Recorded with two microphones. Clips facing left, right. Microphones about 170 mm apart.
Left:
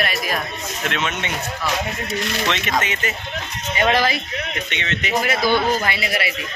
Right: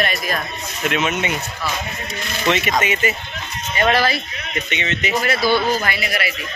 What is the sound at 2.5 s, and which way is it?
Speech, 10° right (ahead or behind).